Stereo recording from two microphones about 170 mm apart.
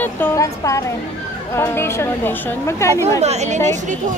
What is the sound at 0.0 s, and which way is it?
A woman's voice, 15° left (ahead or behind).